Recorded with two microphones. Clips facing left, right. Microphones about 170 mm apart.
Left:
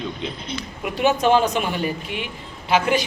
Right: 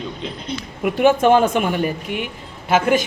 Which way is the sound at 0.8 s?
50° right (ahead or behind).